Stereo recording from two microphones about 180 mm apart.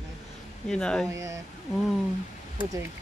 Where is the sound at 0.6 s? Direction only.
5° left (ahead or behind).